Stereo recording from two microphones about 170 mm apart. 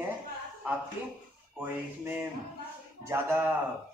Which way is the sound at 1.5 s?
10° right (ahead or behind).